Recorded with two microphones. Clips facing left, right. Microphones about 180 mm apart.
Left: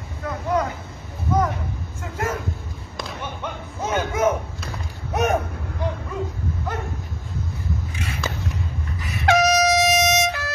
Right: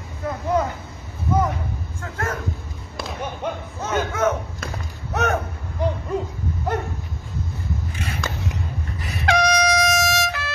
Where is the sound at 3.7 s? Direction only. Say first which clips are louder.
Left 1 dB; 10° left (ahead or behind).